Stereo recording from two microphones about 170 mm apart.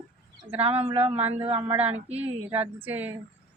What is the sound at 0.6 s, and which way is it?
Speech, 35° right (ahead or behind).